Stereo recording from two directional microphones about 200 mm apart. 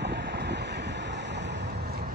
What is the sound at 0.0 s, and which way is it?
Waves, 60° right (ahead or behind).